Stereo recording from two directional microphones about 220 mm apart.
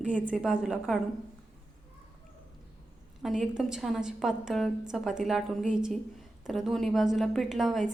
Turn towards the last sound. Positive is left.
turn(degrees=0)  # may be behind; listen again after turning